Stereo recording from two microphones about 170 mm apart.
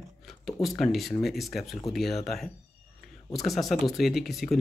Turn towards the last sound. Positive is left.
turn(degrees=0)  # may be behind; listen again after turning